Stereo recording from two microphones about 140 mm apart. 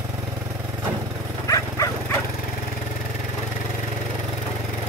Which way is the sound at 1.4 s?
25° left (ahead or behind).